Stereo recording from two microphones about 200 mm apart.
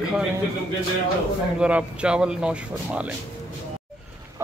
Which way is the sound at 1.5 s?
5° right (ahead or behind).